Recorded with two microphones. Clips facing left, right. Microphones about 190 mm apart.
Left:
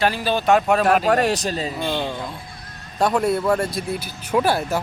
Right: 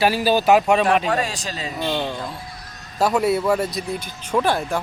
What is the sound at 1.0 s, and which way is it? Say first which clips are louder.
Speech: left 5 dB; 65° left (ahead or behind).